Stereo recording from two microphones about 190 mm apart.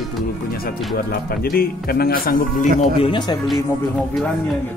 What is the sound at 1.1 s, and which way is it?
A man's voice, 50° left (ahead or behind).